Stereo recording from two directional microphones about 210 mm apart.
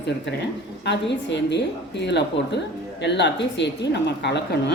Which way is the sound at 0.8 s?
55° left (ahead or behind).